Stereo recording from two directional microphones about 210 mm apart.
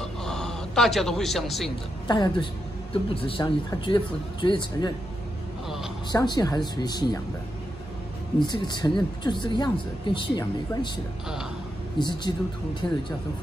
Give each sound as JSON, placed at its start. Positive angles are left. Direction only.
{"t": 0.0, "sound": "a sound", "side_deg": 5}
{"t": 2.0, "sound": "speech", "side_deg": 20}
{"t": 6.1, "sound": "speech", "side_deg": 20}
{"t": 8.4, "sound": "speech", "side_deg": 20}
{"t": 12.0, "sound": "speech", "side_deg": 20}